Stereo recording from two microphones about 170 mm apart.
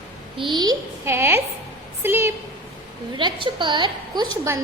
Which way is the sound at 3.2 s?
30° right (ahead or behind).